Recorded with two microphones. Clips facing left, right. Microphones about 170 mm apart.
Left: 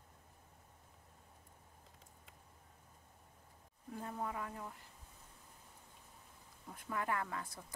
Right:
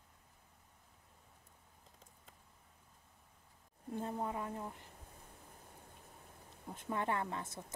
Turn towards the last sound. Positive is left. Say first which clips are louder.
# right 2 dB
turn(degrees=-25)  # may be behind; listen again after turning